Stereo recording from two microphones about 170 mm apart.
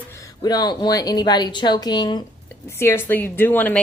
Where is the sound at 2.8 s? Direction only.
15° left (ahead or behind).